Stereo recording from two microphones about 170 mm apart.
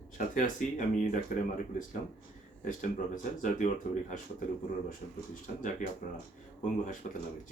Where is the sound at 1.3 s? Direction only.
55° left (ahead or behind).